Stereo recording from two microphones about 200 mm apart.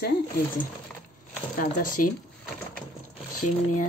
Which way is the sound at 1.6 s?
40° left (ahead or behind).